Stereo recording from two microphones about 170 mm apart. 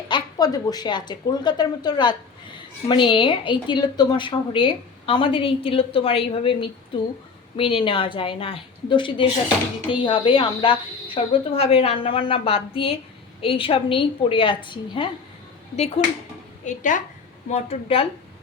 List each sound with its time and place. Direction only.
0.1 s a woman's voice: 20° left (ahead or behind)
16.6 s a woman's voice: 50° left (ahead or behind)
17.5 s a woman's voice: 35° left (ahead or behind)